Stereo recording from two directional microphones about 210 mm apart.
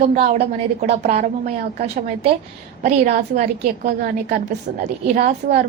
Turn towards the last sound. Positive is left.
turn(degrees=-40)  # may be behind; listen again after turning